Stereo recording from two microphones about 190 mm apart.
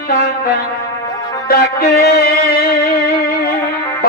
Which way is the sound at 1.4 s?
50° left (ahead or behind).